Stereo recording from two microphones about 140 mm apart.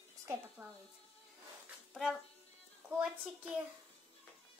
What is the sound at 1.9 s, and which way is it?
Speech, centre (ahead or behind).